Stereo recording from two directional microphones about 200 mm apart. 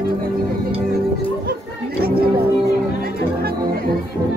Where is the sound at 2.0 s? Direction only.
50° right (ahead or behind).